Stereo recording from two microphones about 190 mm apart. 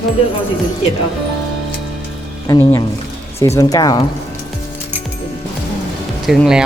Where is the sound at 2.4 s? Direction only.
20° left (ahead or behind).